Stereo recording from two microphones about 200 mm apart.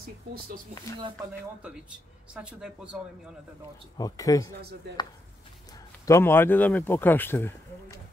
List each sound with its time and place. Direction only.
2.3 s speech: 5° right (ahead or behind)
4.0 s speech: 15° left (ahead or behind)
6.0 s speech: 10° left (ahead or behind)